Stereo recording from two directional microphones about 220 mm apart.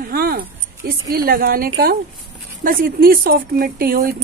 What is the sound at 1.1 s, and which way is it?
Speech, 45° right (ahead or behind).